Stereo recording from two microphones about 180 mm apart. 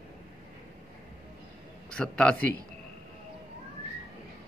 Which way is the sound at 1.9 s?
5° left (ahead or behind).